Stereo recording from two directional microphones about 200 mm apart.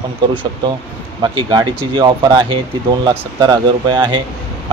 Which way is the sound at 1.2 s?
25° right (ahead or behind).